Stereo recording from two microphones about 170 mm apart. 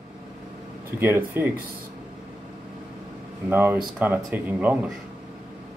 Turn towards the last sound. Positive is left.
turn(degrees=-10)  # may be behind; listen again after turning